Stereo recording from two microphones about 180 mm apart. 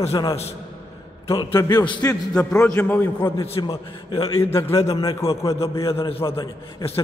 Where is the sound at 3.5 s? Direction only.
25° left (ahead or behind).